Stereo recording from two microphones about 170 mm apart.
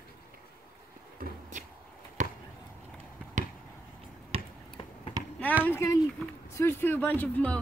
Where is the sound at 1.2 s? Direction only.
50° right (ahead or behind).